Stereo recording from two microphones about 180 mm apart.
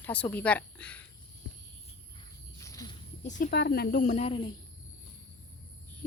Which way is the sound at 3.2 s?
45° left (ahead or behind).